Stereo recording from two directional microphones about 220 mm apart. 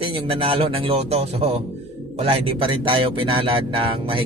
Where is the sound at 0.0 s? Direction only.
25° right (ahead or behind).